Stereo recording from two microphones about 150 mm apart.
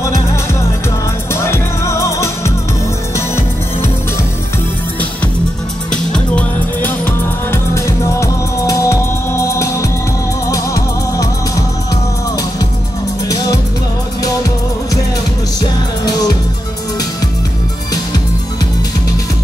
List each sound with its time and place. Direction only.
1.3 s music: 15° left (ahead or behind)
5.9 s music: 5° left (ahead or behind)
7.5 s music: 20° left (ahead or behind)